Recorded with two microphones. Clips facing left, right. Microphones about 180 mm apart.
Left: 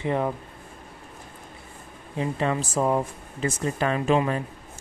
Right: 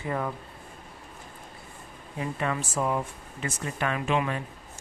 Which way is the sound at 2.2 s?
30° left (ahead or behind).